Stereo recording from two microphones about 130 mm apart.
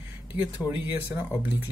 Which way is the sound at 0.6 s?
15° right (ahead or behind).